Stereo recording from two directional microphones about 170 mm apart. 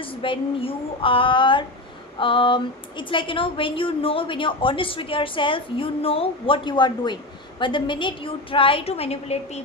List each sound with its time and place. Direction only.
0.0 s a woman's voice: 30° left (ahead or behind)
2.1 s a sound: 30° left (ahead or behind)
3.0 s a woman's voice: 30° left (ahead or behind)